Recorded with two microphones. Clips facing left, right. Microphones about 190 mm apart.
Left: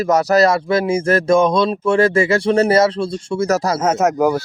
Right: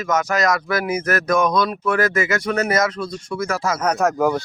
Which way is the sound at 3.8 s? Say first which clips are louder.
Even; 20° left (ahead or behind).